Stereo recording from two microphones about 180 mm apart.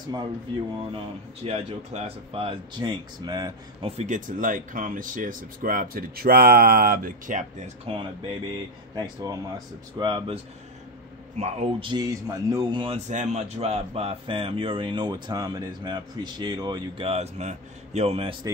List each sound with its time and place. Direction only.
0.9 s speech: 35° right (ahead or behind)
3.9 s speech: 40° right (ahead or behind)
11.9 s speech: 20° right (ahead or behind)
12.8 s speech: 40° right (ahead or behind)